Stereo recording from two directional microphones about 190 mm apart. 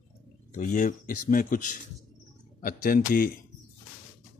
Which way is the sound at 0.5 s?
45° left (ahead or behind).